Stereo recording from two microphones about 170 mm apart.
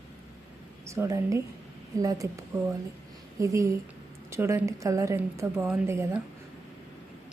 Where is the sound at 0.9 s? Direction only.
15° right (ahead or behind).